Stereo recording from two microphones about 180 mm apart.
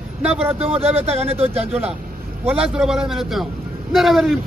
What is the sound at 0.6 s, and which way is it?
Speech, 35° right (ahead or behind).